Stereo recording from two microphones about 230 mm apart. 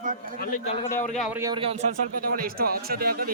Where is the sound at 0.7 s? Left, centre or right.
Left.